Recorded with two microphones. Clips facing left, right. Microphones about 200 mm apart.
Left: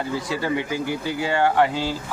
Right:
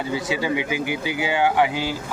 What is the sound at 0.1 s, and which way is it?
Speech, centre (ahead or behind).